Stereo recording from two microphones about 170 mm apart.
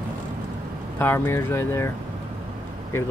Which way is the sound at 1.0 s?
10° left (ahead or behind).